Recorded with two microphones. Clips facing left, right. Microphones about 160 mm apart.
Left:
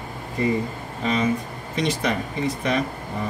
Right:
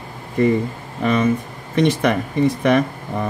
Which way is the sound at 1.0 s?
60° right (ahead or behind).